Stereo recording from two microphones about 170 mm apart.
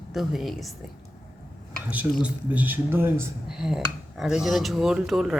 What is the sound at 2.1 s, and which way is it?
Speech, 10° right (ahead or behind).